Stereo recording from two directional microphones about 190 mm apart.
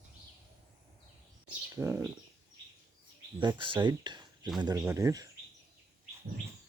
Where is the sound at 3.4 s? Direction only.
25° right (ahead or behind).